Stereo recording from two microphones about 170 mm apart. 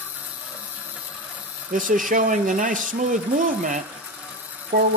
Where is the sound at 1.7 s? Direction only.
50° right (ahead or behind).